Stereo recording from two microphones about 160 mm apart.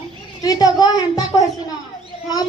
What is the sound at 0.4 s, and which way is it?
A woman's voice, 25° left (ahead or behind).